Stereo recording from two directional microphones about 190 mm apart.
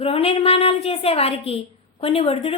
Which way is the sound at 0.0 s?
30° left (ahead or behind).